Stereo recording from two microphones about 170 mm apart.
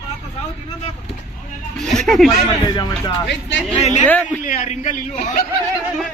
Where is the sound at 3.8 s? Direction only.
40° left (ahead or behind).